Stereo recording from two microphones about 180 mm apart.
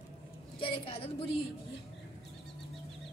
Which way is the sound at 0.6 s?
30° left (ahead or behind).